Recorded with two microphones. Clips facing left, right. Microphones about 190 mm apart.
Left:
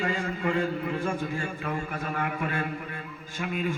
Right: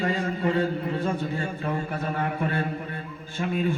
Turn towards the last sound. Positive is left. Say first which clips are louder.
# right 4 dB
turn(degrees=-35)  # may be behind; listen again after turning